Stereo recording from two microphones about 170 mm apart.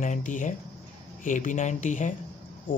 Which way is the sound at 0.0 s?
50° left (ahead or behind).